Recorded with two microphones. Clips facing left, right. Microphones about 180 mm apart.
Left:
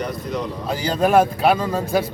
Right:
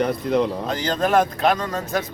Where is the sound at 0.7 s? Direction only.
10° left (ahead or behind).